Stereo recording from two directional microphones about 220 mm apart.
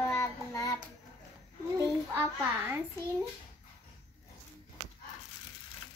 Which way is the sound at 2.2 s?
10° right (ahead or behind).